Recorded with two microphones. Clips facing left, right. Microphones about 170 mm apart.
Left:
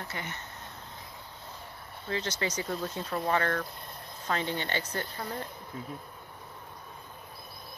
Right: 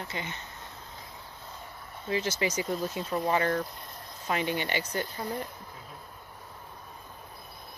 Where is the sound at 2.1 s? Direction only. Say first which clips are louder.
Right 3 dB; 10° right (ahead or behind).